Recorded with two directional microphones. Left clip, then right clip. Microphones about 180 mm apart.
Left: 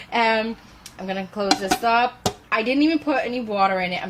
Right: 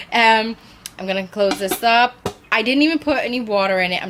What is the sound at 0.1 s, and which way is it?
A woman's voice, 25° right (ahead or behind).